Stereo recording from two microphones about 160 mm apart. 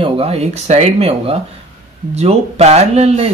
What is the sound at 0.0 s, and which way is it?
Speech, 35° right (ahead or behind).